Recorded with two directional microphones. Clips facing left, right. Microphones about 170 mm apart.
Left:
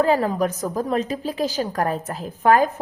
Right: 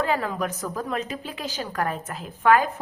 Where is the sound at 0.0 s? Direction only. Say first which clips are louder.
Left 6 dB; 35° left (ahead or behind).